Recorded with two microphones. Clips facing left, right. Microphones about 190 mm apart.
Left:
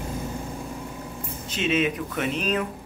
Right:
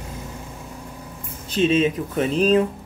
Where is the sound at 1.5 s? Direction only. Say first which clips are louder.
Right 6 dB; 30° right (ahead or behind).